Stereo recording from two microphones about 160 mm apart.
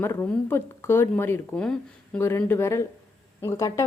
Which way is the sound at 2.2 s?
15° left (ahead or behind).